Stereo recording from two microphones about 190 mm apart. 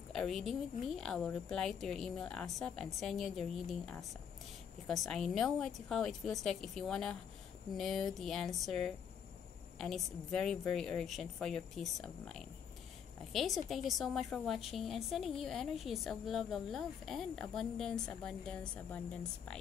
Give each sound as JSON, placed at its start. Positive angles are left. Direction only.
{"t": 0.1, "sound": "a woman's voice", "side_deg": 0}